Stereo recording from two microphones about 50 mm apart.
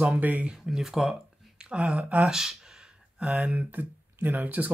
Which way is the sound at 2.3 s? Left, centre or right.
Centre.